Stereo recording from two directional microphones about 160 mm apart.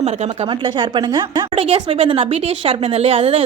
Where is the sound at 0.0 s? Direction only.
45° right (ahead or behind).